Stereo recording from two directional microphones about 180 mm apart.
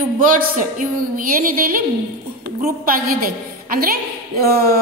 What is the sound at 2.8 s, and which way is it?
A woman's voice, 55° right (ahead or behind).